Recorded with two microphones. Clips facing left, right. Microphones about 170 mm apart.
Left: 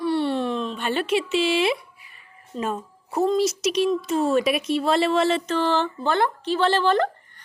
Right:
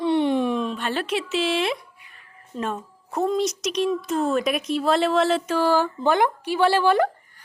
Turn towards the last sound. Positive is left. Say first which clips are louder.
# right 1 dB
turn(degrees=-10)  # may be behind; listen again after turning